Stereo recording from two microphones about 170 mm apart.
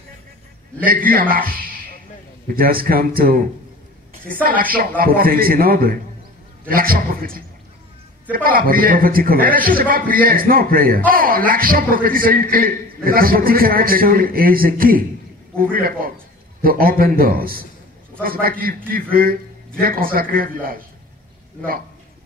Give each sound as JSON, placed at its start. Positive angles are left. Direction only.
{"t": 1.3, "sound": "a man's voice", "side_deg": -55}
{"t": 8.5, "sound": "a man's voice", "side_deg": -55}